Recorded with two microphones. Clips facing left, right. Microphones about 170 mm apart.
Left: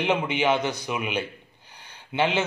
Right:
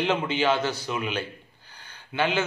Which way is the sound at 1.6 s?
20° left (ahead or behind).